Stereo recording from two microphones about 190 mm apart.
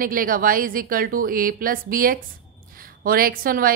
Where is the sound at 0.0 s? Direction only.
50° right (ahead or behind).